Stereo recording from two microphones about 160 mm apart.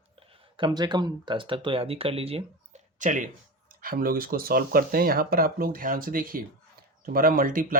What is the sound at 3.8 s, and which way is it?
Speech, 65° right (ahead or behind).